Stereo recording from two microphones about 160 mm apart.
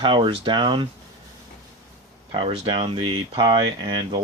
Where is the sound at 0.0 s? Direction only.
30° right (ahead or behind).